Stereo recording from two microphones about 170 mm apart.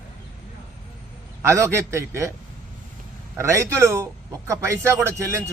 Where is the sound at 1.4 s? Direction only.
15° right (ahead or behind).